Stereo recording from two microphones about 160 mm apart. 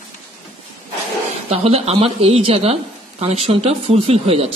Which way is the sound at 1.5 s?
40° right (ahead or behind).